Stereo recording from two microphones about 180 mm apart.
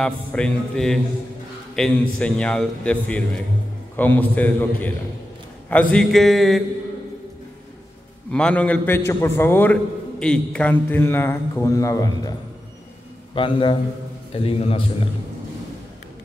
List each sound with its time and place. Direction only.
0.0 s a man's voice: 5° left (ahead or behind)
8.3 s a man's voice: 5° left (ahead or behind); by 14.9 s 30° left (ahead or behind)